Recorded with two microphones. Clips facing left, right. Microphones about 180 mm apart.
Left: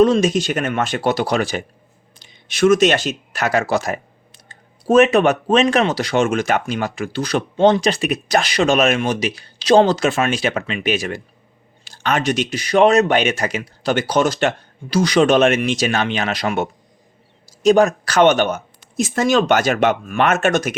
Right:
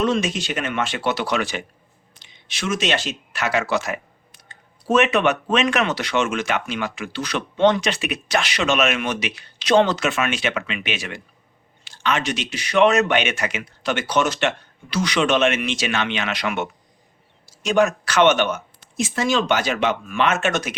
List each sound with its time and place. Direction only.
0.0 s speech: 40° left (ahead or behind)